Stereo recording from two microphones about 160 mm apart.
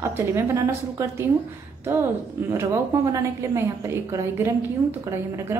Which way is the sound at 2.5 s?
20° right (ahead or behind).